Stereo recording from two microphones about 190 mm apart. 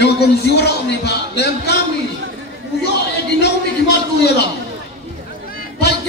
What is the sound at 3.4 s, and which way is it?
Speech, 60° left (ahead or behind).